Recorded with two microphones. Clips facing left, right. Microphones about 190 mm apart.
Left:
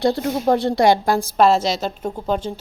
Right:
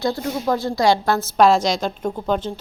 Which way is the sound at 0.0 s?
35° left (ahead or behind).